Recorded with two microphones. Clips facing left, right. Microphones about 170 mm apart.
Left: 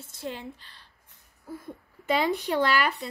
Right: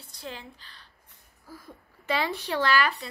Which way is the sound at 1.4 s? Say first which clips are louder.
Left 7 dB; 25° left (ahead or behind).